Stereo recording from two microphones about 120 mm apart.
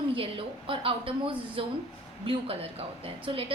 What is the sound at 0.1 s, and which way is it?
A woman's voice, 50° right (ahead or behind).